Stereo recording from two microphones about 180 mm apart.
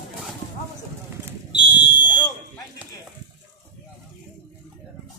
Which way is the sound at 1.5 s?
25° left (ahead or behind).